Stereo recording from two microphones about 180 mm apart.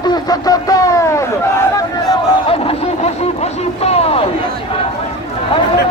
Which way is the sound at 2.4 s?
30° left (ahead or behind).